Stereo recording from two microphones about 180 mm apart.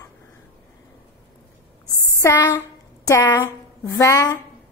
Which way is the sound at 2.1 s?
15° left (ahead or behind).